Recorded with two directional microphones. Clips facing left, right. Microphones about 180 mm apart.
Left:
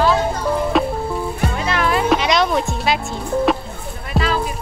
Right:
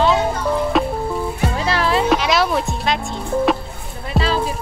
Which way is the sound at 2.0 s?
Centre (ahead or behind).